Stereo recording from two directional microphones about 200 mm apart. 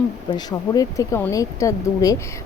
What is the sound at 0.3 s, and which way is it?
Speech, 20° left (ahead or behind).